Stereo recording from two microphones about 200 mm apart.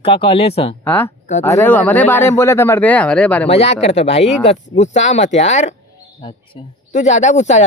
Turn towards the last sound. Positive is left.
turn(degrees=35)  # may be behind; listen again after turning